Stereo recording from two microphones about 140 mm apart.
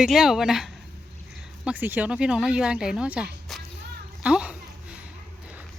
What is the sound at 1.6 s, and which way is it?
A child's voice, 15° right (ahead or behind).